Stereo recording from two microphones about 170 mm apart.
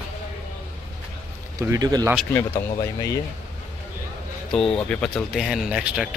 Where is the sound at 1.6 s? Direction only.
20° right (ahead or behind).